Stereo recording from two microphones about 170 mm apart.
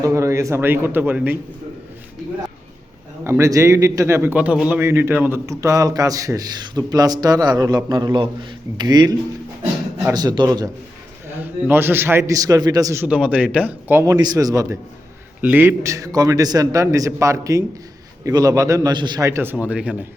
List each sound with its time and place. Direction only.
0.0 s a man's voice: 15° right (ahead or behind)
3.2 s a man's voice: 15° right (ahead or behind)
11.3 s a man's voice: 10° right (ahead or behind)
13.1 s a man's voice: 5° right (ahead or behind)